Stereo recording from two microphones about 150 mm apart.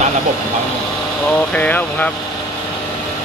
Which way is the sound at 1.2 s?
10° left (ahead or behind).